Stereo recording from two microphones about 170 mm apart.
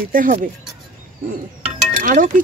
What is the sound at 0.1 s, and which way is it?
Speech, 50° right (ahead or behind).